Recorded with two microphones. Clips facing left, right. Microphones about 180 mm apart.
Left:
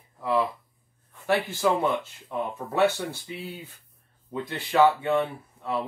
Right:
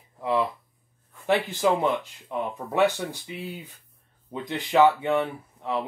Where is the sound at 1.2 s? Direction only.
15° right (ahead or behind).